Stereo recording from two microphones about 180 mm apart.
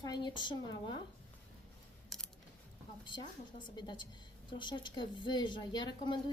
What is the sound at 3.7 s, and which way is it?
A woman's voice, 25° left (ahead or behind).